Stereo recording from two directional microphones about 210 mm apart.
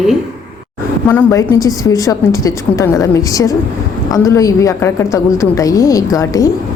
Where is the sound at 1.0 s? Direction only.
10° left (ahead or behind).